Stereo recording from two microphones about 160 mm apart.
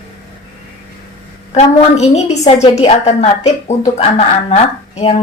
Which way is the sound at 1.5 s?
45° left (ahead or behind).